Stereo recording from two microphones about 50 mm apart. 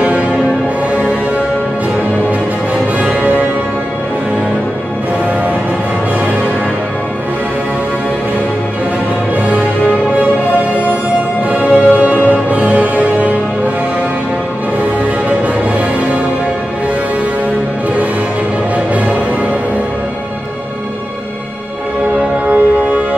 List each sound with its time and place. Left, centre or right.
3.0 s music: right
11.5 s music: right
15.2 s music: right
22.5 s music: right